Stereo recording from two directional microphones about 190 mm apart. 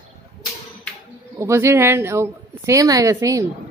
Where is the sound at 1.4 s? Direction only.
15° right (ahead or behind).